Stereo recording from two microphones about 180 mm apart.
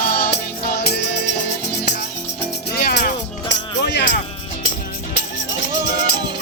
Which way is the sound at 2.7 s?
60° left (ahead or behind).